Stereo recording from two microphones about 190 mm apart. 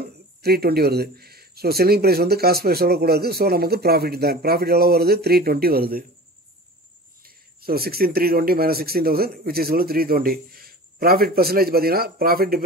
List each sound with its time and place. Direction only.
0.4 s speech: 55° right (ahead or behind)
7.2 s speech: 55° right (ahead or behind)